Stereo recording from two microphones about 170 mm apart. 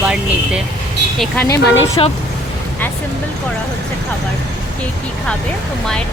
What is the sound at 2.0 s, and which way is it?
Speech, 30° left (ahead or behind).